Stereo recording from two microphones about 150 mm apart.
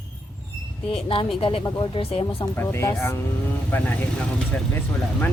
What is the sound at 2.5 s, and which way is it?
Speech, 15° left (ahead or behind).